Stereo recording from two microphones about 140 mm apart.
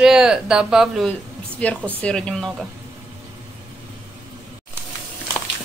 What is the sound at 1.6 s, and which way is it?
Speech, 10° left (ahead or behind).